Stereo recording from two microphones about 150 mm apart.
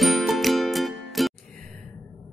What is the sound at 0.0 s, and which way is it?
Music, centre (ahead or behind).